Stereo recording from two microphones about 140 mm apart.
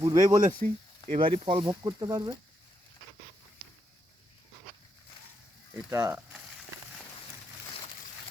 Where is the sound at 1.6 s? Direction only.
30° right (ahead or behind).